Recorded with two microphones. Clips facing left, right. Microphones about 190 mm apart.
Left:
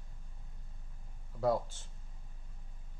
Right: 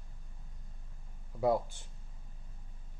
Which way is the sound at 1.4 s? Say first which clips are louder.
Right 2 dB; 15° right (ahead or behind).